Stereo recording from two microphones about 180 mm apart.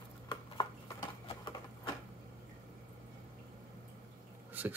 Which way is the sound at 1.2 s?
25° left (ahead or behind).